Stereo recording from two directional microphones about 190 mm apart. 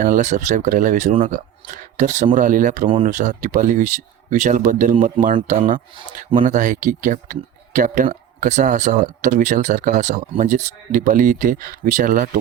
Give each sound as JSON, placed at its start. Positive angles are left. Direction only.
{"t": 0.0, "sound": "speech", "side_deg": -40}